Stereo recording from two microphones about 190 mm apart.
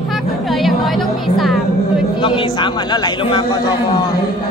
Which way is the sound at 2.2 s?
25° left (ahead or behind).